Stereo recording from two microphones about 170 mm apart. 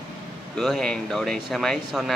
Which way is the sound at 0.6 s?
Centre (ahead or behind).